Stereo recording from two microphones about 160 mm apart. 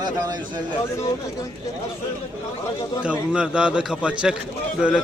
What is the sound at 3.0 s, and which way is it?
A man's voice, 5° right (ahead or behind).